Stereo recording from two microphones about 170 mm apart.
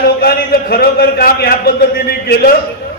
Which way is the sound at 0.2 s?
65° left (ahead or behind).